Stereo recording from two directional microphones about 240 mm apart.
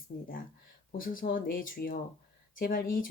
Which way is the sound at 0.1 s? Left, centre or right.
Left.